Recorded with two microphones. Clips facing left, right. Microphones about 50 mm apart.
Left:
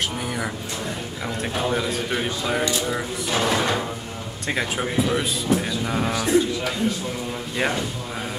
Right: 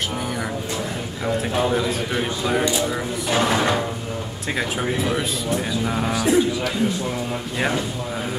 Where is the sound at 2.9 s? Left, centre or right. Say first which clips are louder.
Right 2 dB; centre.